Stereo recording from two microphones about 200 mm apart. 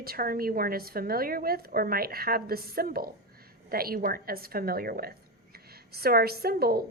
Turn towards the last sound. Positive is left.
turn(degrees=-50)  # may be behind; listen again after turning